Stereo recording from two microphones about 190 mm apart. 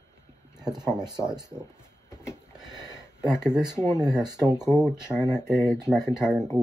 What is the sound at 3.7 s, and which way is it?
Speech, 15° left (ahead or behind).